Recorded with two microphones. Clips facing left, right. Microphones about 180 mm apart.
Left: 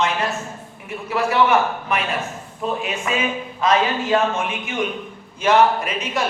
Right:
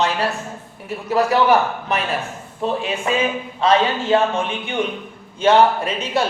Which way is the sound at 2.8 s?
30° right (ahead or behind).